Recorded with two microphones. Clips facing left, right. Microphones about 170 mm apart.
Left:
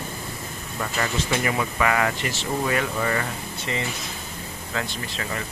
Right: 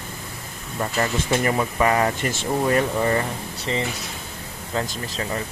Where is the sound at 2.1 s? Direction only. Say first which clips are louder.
Right 3 dB; 45° right (ahead or behind).